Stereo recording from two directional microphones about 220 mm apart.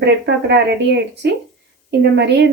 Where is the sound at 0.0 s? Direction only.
50° right (ahead or behind).